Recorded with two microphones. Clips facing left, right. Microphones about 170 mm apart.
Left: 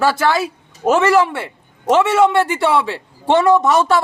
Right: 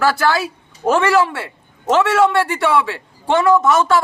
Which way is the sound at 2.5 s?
30° left (ahead or behind).